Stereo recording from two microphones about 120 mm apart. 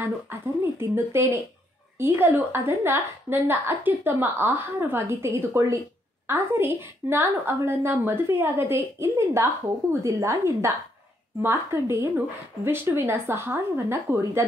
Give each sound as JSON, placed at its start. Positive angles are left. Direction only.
{"t": 0.0, "sound": "a woman's voice", "side_deg": -20}